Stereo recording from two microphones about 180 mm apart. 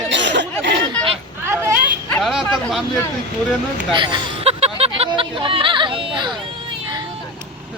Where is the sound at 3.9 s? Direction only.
25° right (ahead or behind).